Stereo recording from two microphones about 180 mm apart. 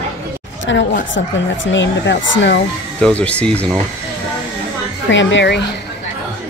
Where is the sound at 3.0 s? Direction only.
5° left (ahead or behind).